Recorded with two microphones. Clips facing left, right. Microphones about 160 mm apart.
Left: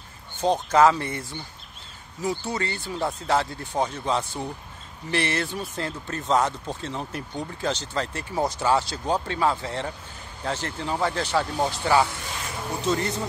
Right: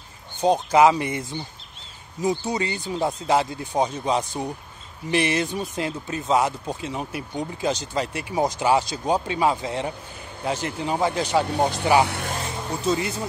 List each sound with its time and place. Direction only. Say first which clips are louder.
0.4 s speech: right 2 dB; 10° right (ahead or behind)
12.1 s a sound: right 6 dB; 65° right (ahead or behind)
12.8 s speech: right 1 dB; 10° right (ahead or behind)